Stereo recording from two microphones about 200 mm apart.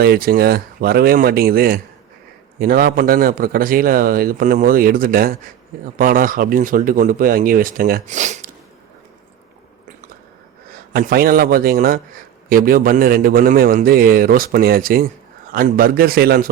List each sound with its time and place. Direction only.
0.0 s a man's voice: 50° right (ahead or behind)
10.7 s a man's voice: 50° right (ahead or behind)